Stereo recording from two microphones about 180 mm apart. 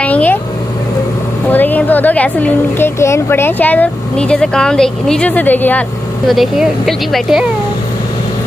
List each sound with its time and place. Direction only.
0.0 s vehicle: 10° left (ahead or behind)
1.5 s a woman's voice: 10° left (ahead or behind)